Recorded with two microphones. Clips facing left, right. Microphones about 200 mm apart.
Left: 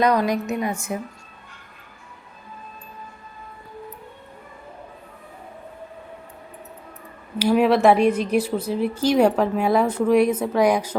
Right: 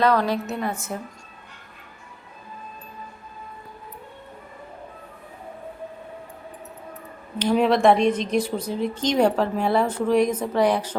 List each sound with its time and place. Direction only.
0.0 s a woman's voice: 15° left (ahead or behind)
7.3 s a woman's voice: 5° left (ahead or behind)